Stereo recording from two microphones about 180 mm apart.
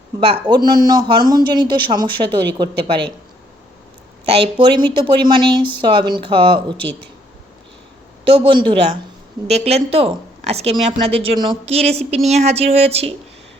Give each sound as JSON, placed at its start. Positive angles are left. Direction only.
{"t": 0.2, "sound": "speech", "side_deg": -30}
{"t": 4.3, "sound": "speech", "side_deg": -30}
{"t": 8.2, "sound": "speech", "side_deg": -30}